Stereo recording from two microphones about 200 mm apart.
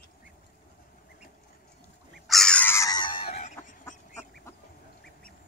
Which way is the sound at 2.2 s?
Centre (ahead or behind).